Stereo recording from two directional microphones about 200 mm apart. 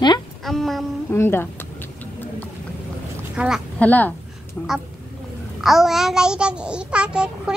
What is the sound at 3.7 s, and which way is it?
Speech, 10° left (ahead or behind).